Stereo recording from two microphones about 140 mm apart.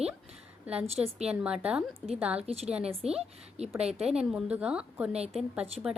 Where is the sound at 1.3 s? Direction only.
5° right (ahead or behind).